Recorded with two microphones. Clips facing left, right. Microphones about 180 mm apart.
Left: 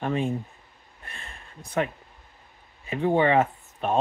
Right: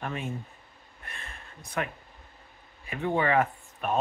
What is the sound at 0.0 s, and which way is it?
Speech, 30° left (ahead or behind).